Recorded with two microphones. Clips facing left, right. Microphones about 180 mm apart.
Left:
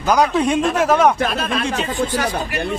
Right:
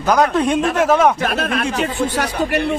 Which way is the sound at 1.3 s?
60° right (ahead or behind).